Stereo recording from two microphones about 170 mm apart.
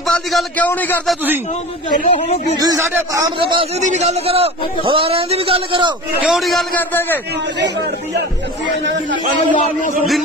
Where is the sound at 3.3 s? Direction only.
30° right (ahead or behind).